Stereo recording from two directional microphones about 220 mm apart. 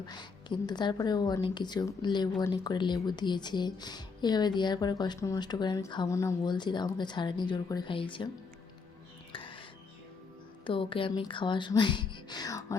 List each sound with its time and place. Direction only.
0.0 s speech: 20° left (ahead or behind)
9.3 s music: 25° left (ahead or behind)
10.6 s speech: 25° left (ahead or behind)